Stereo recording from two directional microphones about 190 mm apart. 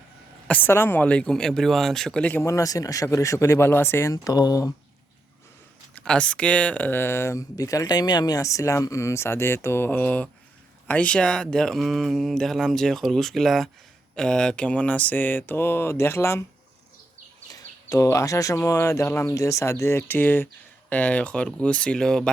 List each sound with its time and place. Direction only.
0.4 s speech: 10° left (ahead or behind)
6.1 s speech: 5° left (ahead or behind)
17.5 s speech: 20° left (ahead or behind); by 22.3 s 5° left (ahead or behind)